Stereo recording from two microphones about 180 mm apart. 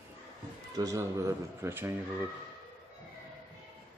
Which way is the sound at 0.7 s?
15° right (ahead or behind).